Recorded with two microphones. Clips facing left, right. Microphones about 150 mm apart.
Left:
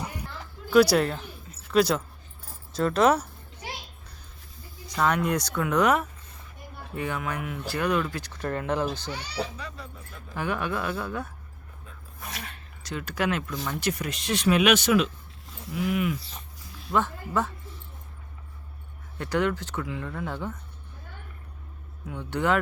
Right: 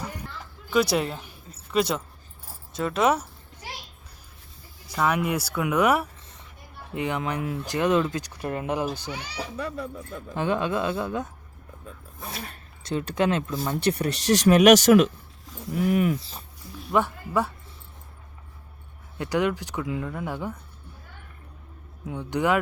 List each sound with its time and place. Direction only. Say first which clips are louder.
0.7 s speech: left 4 dB; centre (ahead or behind)
4.9 s speech: even; 5° right (ahead or behind)
9.6 s speech: right 9 dB; 55° right (ahead or behind)
10.3 s speech: right 4 dB; 20° right (ahead or behind)
12.2 s speech: right 3 dB; 30° right (ahead or behind)
16.9 s speech: right 2 dB; 10° right (ahead or behind)
19.2 s speech: right 1 dB; 15° right (ahead or behind)
22.0 s speech: right 2 dB; 15° right (ahead or behind)